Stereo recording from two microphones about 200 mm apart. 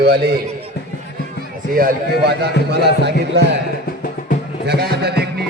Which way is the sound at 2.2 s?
55° right (ahead or behind).